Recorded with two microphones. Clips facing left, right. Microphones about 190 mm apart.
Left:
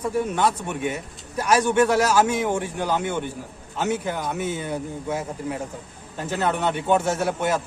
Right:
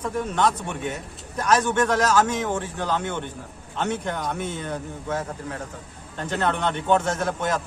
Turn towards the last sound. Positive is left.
turn(degrees=10)  # may be behind; listen again after turning